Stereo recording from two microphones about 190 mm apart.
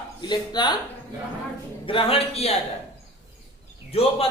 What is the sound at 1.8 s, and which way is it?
Speech, 30° left (ahead or behind).